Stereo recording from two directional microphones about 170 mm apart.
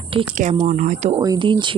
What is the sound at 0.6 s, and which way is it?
Speech, 45° right (ahead or behind).